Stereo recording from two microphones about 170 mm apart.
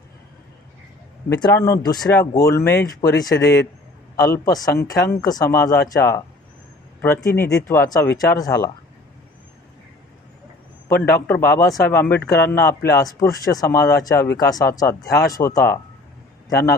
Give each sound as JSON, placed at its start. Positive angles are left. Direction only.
{"t": 1.4, "sound": "speech", "side_deg": 20}
{"t": 7.3, "sound": "speech", "side_deg": 15}
{"t": 10.8, "sound": "a man's voice", "side_deg": 15}